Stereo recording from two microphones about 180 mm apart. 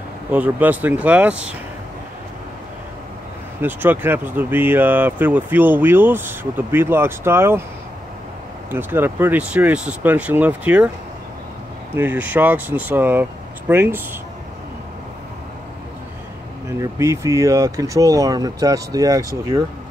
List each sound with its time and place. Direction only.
0.3 s speech: 10° right (ahead or behind)
3.6 s speech: 10° right (ahead or behind)
8.6 s speech: 10° right (ahead or behind)
11.9 s speech: 10° right (ahead or behind)
16.8 s speech: 15° right (ahead or behind)